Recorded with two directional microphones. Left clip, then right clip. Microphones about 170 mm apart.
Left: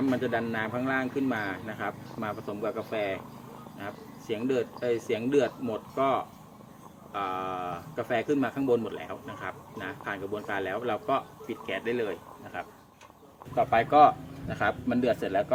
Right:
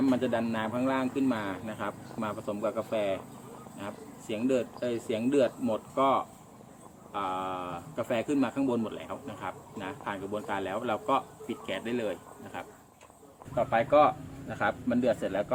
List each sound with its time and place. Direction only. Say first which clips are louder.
0.1 s speech: even; 30° right (ahead or behind)
13.6 s speech: left 3 dB; 20° right (ahead or behind)